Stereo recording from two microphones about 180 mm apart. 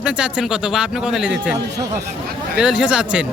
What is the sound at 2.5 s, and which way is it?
Speech, 5° right (ahead or behind).